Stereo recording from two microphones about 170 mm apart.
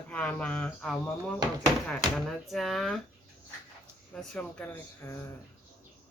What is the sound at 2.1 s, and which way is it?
Speech, centre (ahead or behind).